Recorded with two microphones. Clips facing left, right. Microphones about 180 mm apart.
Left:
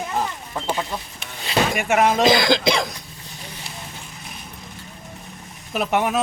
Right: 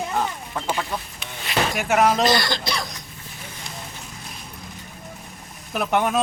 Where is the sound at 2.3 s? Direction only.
90° left.